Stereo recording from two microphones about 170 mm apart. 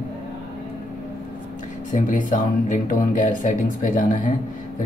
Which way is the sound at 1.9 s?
50° left (ahead or behind).